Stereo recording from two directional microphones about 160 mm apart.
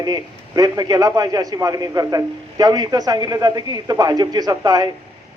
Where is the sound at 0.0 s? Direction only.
25° right (ahead or behind).